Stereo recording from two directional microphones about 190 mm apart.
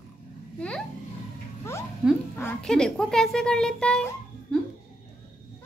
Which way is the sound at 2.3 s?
10° left (ahead or behind).